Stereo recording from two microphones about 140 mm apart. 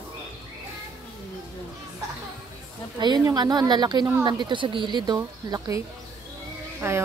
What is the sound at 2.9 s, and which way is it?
Speech, 30° right (ahead or behind).